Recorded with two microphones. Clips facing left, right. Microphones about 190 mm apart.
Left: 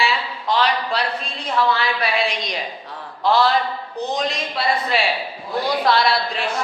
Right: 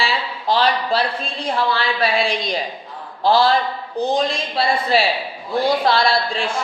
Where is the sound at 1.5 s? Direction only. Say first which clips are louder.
Left 1 dB; 30° right (ahead or behind).